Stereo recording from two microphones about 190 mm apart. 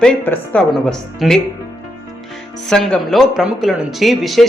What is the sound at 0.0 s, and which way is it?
Speech, 5° left (ahead or behind).